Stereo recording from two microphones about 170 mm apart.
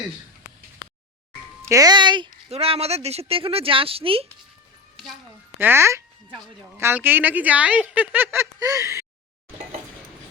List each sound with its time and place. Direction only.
1.6 s speech: 20° right (ahead or behind)
5.5 s speech: 15° right (ahead or behind)